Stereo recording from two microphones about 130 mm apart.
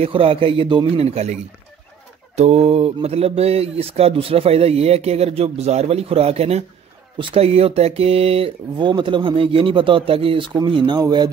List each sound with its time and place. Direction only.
0.0 s speech: 45° right (ahead or behind)
1.1 s speech: 55° right (ahead or behind); by 11.2 s 35° right (ahead or behind)